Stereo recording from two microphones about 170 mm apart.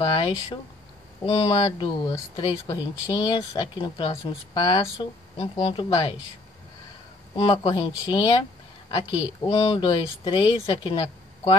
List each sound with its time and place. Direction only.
0.0 s speech: 30° left (ahead or behind)
7.3 s speech: 30° left (ahead or behind)
9.5 s speech: 30° left (ahead or behind)